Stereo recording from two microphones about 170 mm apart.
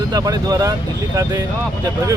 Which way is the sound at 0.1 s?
20° right (ahead or behind).